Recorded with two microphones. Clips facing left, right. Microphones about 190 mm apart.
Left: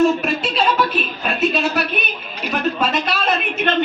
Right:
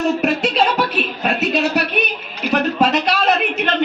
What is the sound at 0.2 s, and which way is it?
Speech, 70° right (ahead or behind).